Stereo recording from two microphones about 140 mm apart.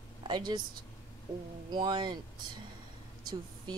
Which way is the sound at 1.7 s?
30° right (ahead or behind).